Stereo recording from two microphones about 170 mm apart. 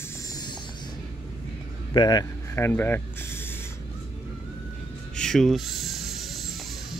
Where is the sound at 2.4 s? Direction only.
15° left (ahead or behind).